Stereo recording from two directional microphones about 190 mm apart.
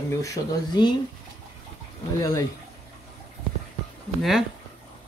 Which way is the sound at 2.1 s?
15° left (ahead or behind).